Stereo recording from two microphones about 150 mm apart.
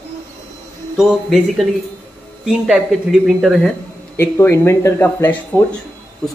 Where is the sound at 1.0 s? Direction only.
Centre (ahead or behind).